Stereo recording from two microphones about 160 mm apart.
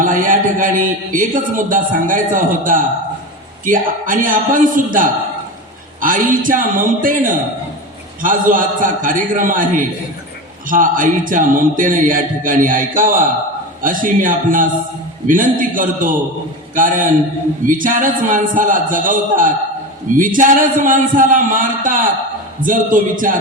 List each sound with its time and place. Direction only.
0.0 s a man's voice: 55° right (ahead or behind)